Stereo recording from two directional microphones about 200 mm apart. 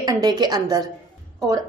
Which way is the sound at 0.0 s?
20° right (ahead or behind).